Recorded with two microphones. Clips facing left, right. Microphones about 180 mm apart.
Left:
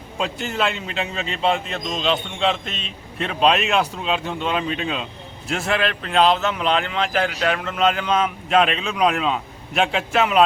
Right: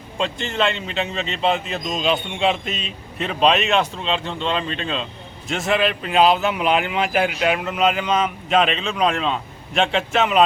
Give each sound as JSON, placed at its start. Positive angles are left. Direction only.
{"t": 0.2, "sound": "a man's voice", "side_deg": 5}